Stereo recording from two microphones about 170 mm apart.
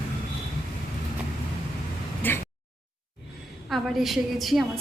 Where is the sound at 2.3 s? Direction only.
10° left (ahead or behind).